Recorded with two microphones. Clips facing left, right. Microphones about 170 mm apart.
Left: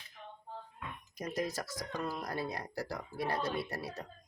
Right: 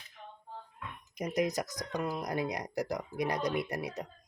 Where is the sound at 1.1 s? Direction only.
20° right (ahead or behind).